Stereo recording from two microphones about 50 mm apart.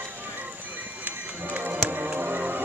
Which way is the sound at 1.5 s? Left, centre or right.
Right.